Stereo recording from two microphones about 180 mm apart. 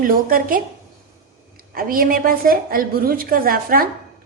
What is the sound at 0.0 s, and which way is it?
Speech, 50° right (ahead or behind).